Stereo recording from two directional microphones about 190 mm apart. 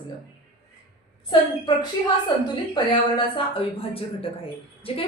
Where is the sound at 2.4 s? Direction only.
25° left (ahead or behind).